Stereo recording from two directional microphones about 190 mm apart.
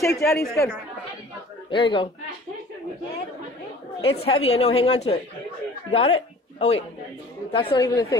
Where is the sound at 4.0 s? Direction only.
30° left (ahead or behind).